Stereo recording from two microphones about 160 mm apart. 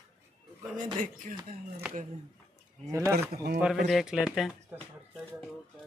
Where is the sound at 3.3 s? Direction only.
85° right.